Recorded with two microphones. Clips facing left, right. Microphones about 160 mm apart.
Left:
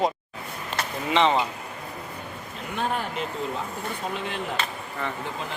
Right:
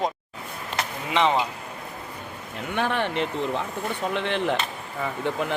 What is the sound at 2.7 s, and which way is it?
Speech, 80° right.